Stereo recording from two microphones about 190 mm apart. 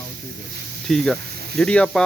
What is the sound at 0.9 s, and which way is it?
Speech, 5° left (ahead or behind).